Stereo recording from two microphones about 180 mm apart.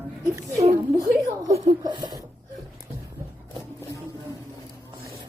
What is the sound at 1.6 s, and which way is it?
Speech, 20° right (ahead or behind).